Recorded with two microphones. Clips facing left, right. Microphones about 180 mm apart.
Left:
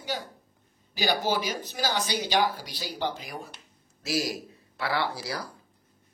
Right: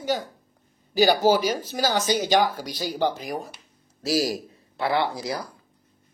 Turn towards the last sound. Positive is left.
turn(degrees=-20)  # may be behind; listen again after turning